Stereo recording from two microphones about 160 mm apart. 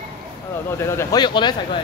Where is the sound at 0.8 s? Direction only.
15° left (ahead or behind).